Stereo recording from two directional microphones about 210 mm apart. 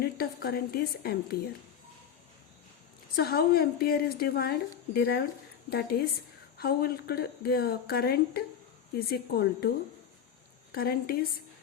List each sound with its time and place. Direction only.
0.0 s a woman's voice: 45° left (ahead or behind)
3.2 s a woman's voice: 50° left (ahead or behind)